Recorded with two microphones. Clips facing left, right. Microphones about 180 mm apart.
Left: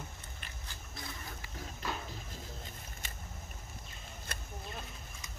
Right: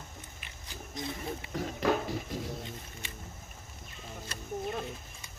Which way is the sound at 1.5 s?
75° right (ahead or behind).